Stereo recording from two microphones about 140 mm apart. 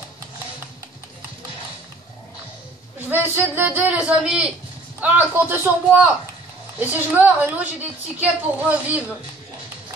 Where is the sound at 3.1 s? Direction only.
15° right (ahead or behind).